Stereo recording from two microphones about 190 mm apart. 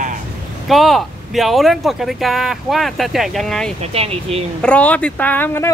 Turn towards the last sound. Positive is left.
turn(degrees=10)  # may be behind; listen again after turning